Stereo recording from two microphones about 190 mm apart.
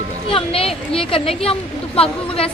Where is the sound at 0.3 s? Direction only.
30° left (ahead or behind).